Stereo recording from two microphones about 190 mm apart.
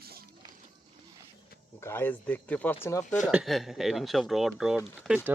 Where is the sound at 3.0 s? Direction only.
40° left (ahead or behind).